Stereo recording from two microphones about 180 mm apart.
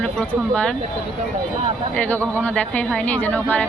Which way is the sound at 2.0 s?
10° left (ahead or behind).